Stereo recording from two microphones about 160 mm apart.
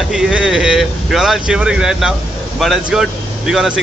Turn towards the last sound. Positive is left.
turn(degrees=-5)  # may be behind; listen again after turning